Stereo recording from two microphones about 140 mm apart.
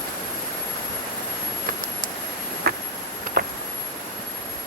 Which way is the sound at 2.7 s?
90° right.